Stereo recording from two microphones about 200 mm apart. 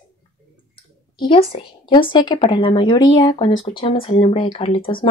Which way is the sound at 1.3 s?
30° left (ahead or behind).